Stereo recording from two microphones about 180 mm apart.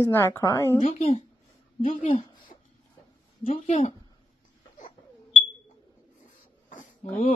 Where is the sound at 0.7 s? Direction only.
35° left (ahead or behind).